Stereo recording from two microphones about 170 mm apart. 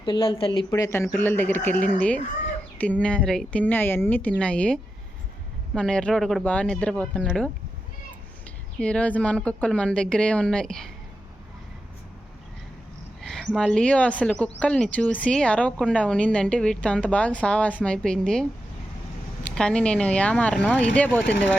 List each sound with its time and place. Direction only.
0.0 s speech: 30° left (ahead or behind)
0.7 s speech: 15° left (ahead or behind)
8.8 s speech: 5° left (ahead or behind)
13.2 s speech: centre (ahead or behind)